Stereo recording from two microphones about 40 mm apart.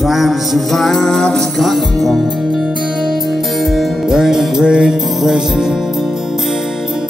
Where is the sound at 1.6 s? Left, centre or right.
Centre.